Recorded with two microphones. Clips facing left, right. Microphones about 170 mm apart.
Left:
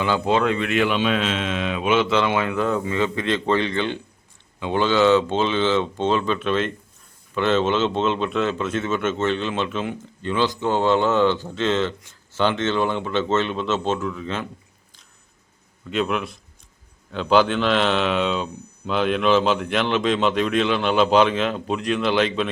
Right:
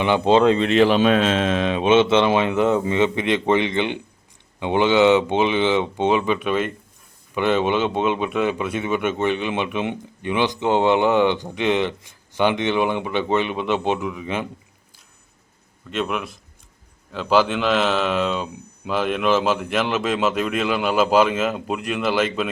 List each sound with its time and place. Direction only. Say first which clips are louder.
0.0 s speech: right 4 dB; 25° right (ahead or behind)
15.9 s speech: left 2 dB; centre (ahead or behind)